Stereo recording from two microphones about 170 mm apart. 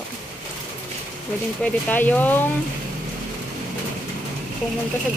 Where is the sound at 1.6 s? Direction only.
10° left (ahead or behind).